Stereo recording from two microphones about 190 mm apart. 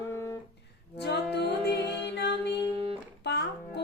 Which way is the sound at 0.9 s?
65° left (ahead or behind).